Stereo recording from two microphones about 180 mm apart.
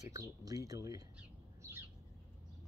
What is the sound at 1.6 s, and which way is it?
Bird, 10° right (ahead or behind).